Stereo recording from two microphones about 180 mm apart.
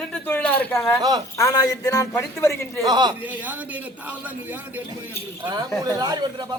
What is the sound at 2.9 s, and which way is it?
Speech, 25° right (ahead or behind).